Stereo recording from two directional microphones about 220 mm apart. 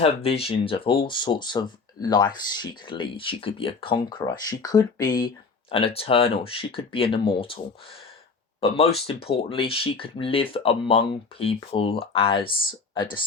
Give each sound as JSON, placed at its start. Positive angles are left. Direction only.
{"t": 0.0, "sound": "speech", "side_deg": 25}
{"t": 9.0, "sound": "speech", "side_deg": 25}